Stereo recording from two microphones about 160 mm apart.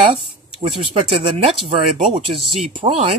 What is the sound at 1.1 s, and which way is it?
Speech, 40° right (ahead or behind).